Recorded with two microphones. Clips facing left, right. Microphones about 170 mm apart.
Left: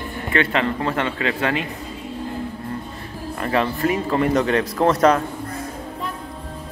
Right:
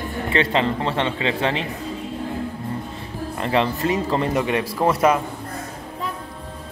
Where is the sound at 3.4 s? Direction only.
20° right (ahead or behind).